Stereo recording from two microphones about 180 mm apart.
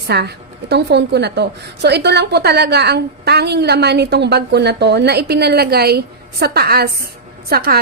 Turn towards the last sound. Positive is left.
turn(degrees=-60)  # may be behind; listen again after turning